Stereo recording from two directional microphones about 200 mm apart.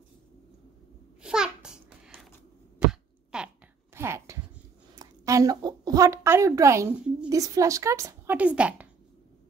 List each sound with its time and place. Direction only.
1.2 s babbling: 5° right (ahead or behind)
2.9 s chopping: 5° right (ahead or behind)
3.9 s a sound: 10° right (ahead or behind)
4.9 s a woman's voice: 15° right (ahead or behind)